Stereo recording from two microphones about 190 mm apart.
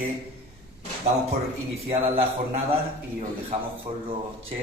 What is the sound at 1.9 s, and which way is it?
Speech, 30° right (ahead or behind).